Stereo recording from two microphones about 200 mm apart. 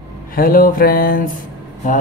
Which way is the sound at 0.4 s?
45° left (ahead or behind).